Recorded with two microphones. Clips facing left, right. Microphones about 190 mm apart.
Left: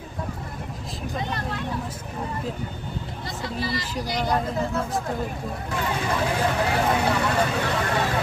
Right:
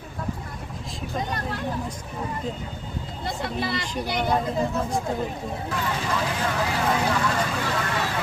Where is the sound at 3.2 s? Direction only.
55° right (ahead or behind).